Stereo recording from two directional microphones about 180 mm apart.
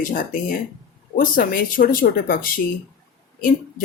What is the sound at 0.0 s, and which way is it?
Speech, 50° left (ahead or behind).